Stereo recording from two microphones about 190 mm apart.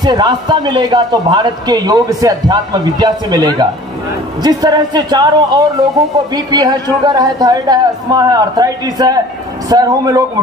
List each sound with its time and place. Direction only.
0.0 s a man's voice: 20° right (ahead or behind)